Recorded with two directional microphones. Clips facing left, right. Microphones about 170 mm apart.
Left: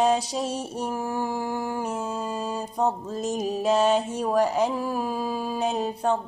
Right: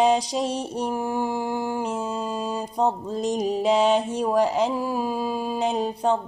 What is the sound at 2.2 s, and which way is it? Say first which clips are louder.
Mantra: right 2 dB; 10° left (ahead or behind).